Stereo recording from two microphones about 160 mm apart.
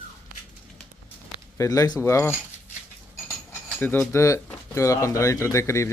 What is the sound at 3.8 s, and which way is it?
Speech, 10° left (ahead or behind).